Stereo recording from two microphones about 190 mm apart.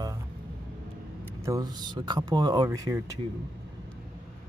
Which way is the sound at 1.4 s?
20° right (ahead or behind).